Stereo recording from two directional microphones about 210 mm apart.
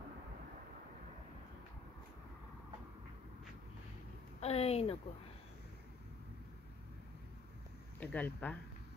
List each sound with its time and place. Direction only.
4.4 s speech: 30° left (ahead or behind)
8.0 s speech: 5° left (ahead or behind)